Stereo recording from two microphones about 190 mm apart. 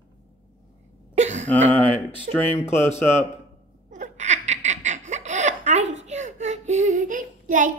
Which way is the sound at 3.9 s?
40° right (ahead or behind).